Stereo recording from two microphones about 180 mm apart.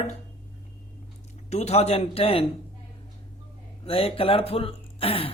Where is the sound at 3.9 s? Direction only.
30° left (ahead or behind).